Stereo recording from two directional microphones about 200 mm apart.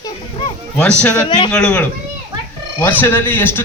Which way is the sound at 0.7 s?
5° left (ahead or behind).